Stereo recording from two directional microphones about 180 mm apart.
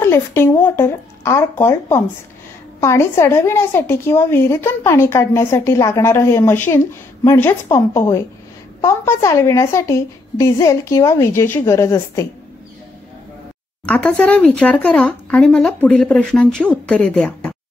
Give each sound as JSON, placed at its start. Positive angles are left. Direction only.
{"t": 0.0, "sound": "speech", "side_deg": 15}
{"t": 13.8, "sound": "speech", "side_deg": 5}